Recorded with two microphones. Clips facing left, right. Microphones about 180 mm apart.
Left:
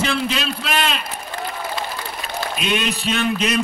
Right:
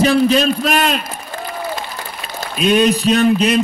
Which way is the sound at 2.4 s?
40° right (ahead or behind).